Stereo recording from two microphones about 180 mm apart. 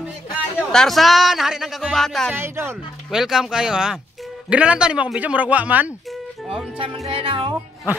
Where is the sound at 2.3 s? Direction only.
15° right (ahead or behind).